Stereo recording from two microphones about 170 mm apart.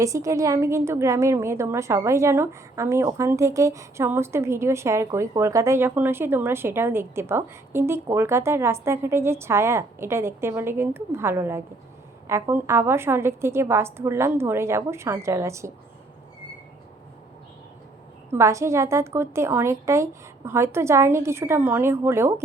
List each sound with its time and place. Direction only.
0.0 s a woman's voice: 20° right (ahead or behind)
18.3 s a woman's voice: 15° right (ahead or behind)